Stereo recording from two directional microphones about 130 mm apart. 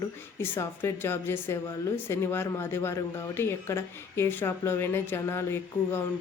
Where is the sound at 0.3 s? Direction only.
15° left (ahead or behind).